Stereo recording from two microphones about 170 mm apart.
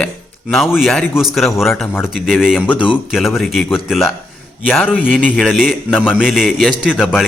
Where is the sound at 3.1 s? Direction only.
Centre (ahead or behind).